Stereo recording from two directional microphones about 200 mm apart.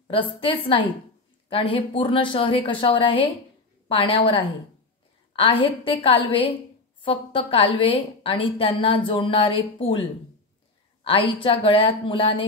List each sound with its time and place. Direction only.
0.1 s a woman's voice: 25° left (ahead or behind)
11.1 s a woman's voice: 25° left (ahead or behind)